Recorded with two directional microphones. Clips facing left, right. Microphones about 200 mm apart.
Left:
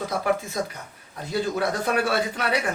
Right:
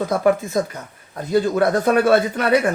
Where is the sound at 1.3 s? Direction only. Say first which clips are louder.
Right 8 dB; 55° right (ahead or behind).